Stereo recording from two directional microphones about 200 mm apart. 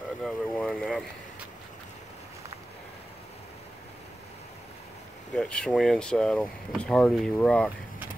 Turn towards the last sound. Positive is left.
turn(degrees=5)  # may be behind; listen again after turning